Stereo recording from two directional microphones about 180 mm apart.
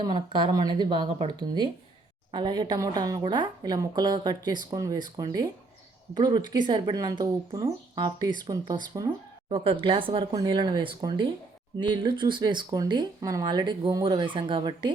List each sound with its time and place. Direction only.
0.0 s speech: 25° right (ahead or behind)